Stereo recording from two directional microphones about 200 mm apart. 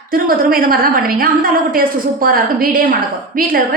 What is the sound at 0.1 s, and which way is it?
A woman's voice, 45° right (ahead or behind).